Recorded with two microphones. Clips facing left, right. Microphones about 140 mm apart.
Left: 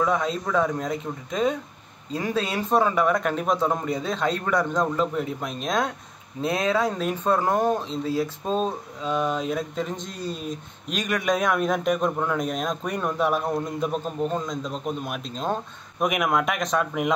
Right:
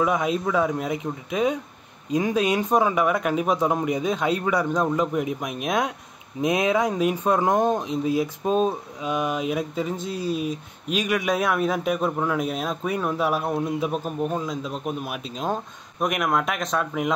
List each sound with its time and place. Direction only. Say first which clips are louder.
0.0 s speech: right 2 dB; 10° right (ahead or behind)
16.0 s speech: even; centre (ahead or behind)